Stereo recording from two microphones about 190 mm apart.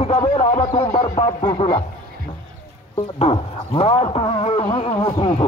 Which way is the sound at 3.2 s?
30° left (ahead or behind).